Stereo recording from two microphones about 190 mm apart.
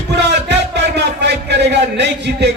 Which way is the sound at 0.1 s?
60° right (ahead or behind).